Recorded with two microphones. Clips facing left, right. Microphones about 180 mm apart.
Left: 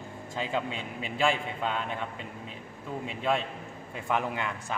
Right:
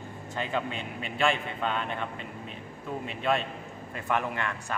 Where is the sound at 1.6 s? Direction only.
10° left (ahead or behind).